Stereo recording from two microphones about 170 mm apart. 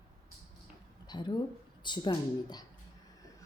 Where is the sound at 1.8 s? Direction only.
25° left (ahead or behind).